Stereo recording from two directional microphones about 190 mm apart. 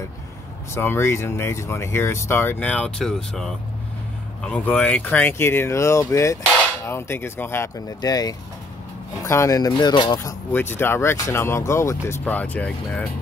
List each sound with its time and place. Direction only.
0.7 s speech: 15° left (ahead or behind)
10.1 s speech: 10° left (ahead or behind)